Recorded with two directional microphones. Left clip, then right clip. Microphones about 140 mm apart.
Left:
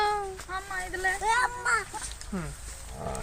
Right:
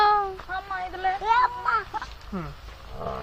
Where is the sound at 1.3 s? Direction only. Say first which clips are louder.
Right 5 dB; 50° left (ahead or behind).